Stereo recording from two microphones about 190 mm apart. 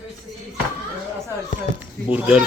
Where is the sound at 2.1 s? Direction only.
10° right (ahead or behind).